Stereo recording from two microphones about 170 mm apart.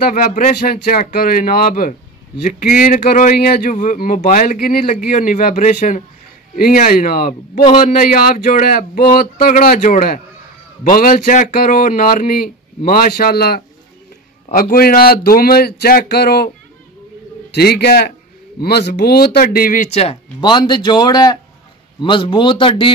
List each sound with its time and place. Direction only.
0.0 s speech: 50° left (ahead or behind); by 16.4 s 70° left (ahead or behind)
17.6 s a man's voice: 70° left (ahead or behind); by 22.9 s 30° left (ahead or behind)